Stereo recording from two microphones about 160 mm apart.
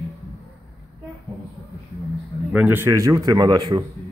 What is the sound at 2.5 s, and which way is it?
Speech, 10° right (ahead or behind).